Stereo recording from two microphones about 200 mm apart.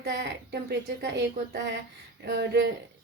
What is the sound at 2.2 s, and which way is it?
Speech, 55° right (ahead or behind).